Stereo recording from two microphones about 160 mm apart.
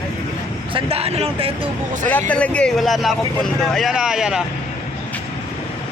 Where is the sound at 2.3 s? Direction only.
10° left (ahead or behind).